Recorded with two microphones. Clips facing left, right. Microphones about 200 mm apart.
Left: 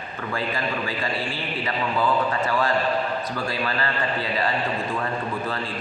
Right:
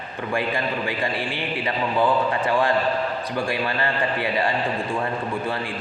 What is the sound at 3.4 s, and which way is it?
A man's voice, 20° right (ahead or behind).